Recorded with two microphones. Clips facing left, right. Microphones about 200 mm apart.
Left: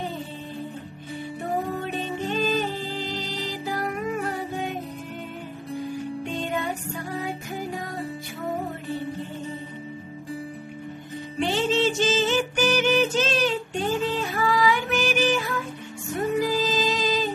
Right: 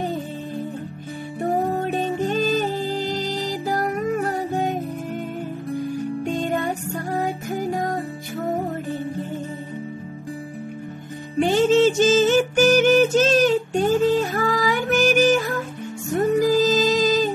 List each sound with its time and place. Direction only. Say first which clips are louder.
1.4 s music: right 7 dB; 45° right (ahead or behind)
6.2 s music: right 5 dB; 45° right (ahead or behind)
11.3 s music: right 7 dB; 45° right (ahead or behind)